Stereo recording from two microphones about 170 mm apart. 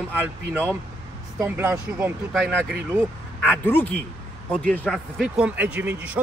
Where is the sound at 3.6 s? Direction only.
10° left (ahead or behind).